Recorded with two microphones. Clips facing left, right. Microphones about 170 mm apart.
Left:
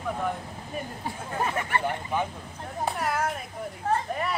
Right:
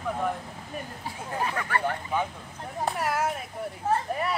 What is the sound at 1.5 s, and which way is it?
Speech, 25° left (ahead or behind).